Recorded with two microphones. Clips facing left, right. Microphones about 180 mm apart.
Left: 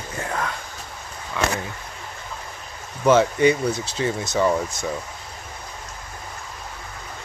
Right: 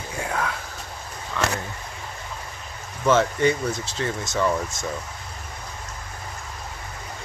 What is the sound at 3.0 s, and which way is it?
Speech, 15° left (ahead or behind).